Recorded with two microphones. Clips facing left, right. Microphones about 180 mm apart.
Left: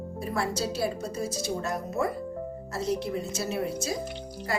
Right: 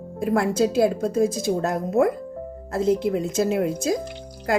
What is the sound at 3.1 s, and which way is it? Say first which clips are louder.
Speech: right 9 dB; 90° right.